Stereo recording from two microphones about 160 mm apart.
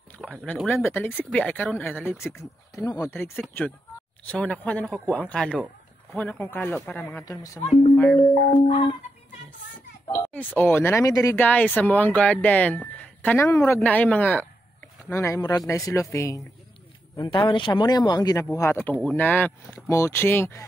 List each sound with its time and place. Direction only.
0.2 s a sound: centre (ahead or behind)
0.8 s speech: 15° left (ahead or behind)
4.3 s speech: 10° left (ahead or behind)
8.2 s speech: 50° left (ahead or behind)
8.5 s music: 35° left (ahead or behind)
10.3 s speech: 10° left (ahead or behind)
11.3 s speech: 10° left (ahead or behind)
17.2 s speech: 30° left (ahead or behind); by 20.6 s 15° left (ahead or behind)